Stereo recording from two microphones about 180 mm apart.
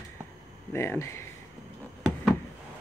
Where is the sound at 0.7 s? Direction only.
15° left (ahead or behind).